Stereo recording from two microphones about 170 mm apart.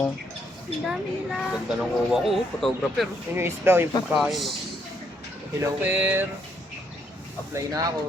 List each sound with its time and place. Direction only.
0.9 s speech: centre (ahead or behind)
3.3 s speech: 15° right (ahead or behind)
4.2 s speech: centre (ahead or behind)
5.6 s speech: 10° right (ahead or behind)
7.5 s speech: 20° right (ahead or behind)